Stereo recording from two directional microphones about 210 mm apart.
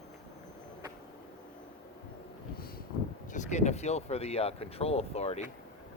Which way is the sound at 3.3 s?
35° left (ahead or behind).